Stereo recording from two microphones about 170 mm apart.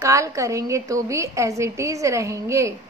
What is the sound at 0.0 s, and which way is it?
A woman's voice, 20° right (ahead or behind).